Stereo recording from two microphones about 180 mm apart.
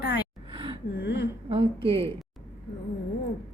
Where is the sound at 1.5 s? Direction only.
30° right (ahead or behind).